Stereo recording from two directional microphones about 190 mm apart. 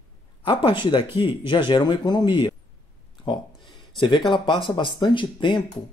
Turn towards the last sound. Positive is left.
turn(degrees=25)  # may be behind; listen again after turning